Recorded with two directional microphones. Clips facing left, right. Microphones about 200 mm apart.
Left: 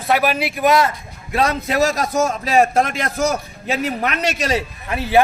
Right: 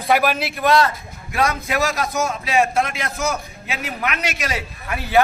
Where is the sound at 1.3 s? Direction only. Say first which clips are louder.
Left 2 dB; 30° left (ahead or behind).